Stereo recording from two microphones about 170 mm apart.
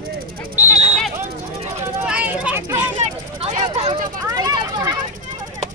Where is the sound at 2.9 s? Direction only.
35° right (ahead or behind).